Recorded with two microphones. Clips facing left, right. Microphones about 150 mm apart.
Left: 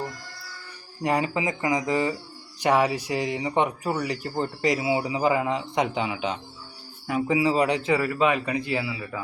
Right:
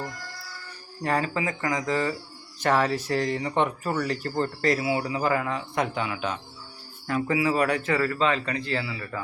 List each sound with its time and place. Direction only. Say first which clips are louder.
1.0 s speech: left 2 dB; 15° left (ahead or behind)